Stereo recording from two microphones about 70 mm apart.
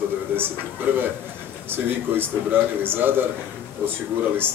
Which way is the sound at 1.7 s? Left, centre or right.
Right.